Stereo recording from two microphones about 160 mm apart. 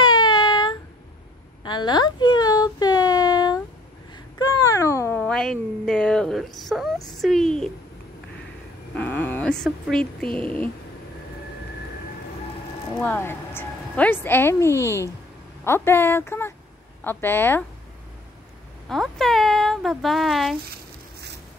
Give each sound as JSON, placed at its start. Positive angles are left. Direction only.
{"t": 0.0, "sound": "a sound", "side_deg": 25}
{"t": 7.2, "sound": "speech", "side_deg": 0}
{"t": 8.9, "sound": "a sound", "side_deg": 10}
{"t": 10.4, "sound": "speech", "side_deg": 10}
{"t": 12.9, "sound": "a woman's voice", "side_deg": 10}
{"t": 18.9, "sound": "speech", "side_deg": 0}